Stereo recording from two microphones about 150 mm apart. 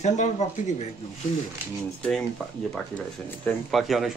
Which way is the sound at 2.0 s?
5° left (ahead or behind).